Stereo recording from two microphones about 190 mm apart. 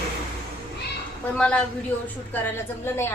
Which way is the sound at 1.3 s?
5° left (ahead or behind).